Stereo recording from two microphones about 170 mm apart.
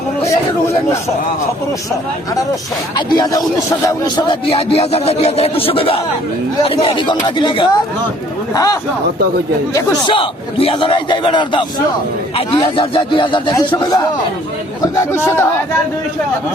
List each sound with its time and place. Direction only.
3.1 s a man's voice: 20° left (ahead or behind)
4.4 s a man's voice: 35° left (ahead or behind)
10.1 s a man's voice: 30° left (ahead or behind); by 15.4 s 15° left (ahead or behind)